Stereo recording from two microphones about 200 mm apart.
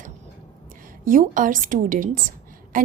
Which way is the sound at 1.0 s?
40° right (ahead or behind).